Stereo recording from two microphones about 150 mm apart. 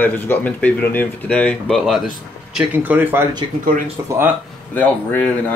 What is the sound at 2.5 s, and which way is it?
Speech, 10° right (ahead or behind).